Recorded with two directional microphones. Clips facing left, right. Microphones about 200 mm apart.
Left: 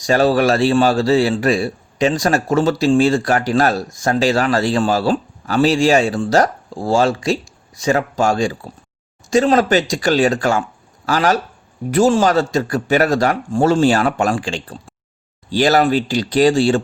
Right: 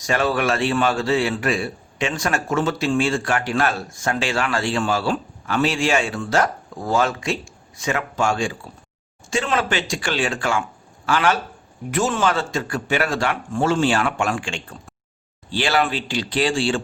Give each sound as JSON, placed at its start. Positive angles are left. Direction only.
{"t": 0.0, "sound": "a man's voice", "side_deg": 35}